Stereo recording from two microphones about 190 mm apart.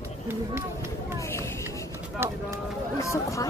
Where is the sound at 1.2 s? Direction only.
15° left (ahead or behind).